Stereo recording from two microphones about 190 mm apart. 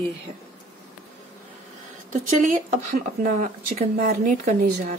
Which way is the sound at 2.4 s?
40° right (ahead or behind).